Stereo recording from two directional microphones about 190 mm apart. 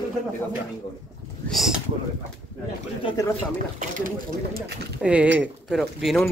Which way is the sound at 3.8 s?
45° right (ahead or behind).